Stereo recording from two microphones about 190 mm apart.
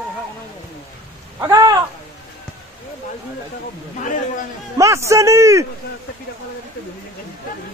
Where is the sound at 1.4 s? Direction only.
20° right (ahead or behind).